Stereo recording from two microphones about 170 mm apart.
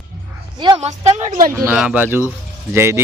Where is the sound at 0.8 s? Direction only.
40° right (ahead or behind).